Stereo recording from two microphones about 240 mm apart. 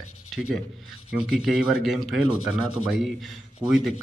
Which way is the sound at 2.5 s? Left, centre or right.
Left.